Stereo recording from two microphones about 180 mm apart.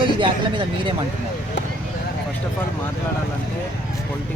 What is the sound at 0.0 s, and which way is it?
Speech, 25° right (ahead or behind).